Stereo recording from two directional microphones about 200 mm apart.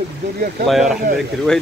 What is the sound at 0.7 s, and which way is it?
Speech, centre (ahead or behind).